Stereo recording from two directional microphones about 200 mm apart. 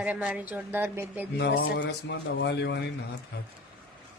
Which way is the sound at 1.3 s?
60° left (ahead or behind).